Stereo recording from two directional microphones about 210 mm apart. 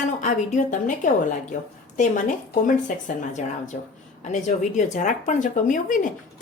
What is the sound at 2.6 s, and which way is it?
Speech, 35° left (ahead or behind).